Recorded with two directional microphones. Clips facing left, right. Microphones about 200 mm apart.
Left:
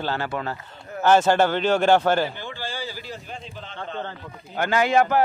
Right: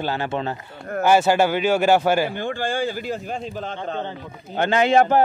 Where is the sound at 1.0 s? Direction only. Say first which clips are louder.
Right 1 dB; 10° right (ahead or behind).